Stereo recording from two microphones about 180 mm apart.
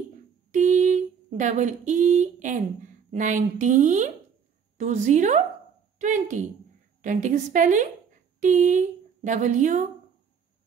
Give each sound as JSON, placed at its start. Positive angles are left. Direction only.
{"t": 0.5, "sound": "a woman's voice", "side_deg": -45}